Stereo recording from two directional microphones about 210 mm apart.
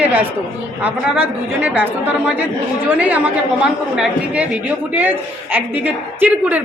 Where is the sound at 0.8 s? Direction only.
5° right (ahead or behind).